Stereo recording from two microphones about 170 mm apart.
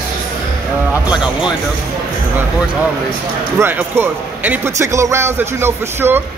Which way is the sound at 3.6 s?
10° right (ahead or behind).